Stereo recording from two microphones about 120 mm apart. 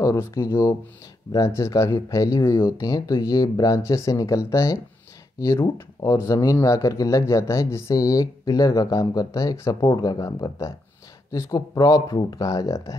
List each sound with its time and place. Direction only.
0.0 s speech: 25° left (ahead or behind)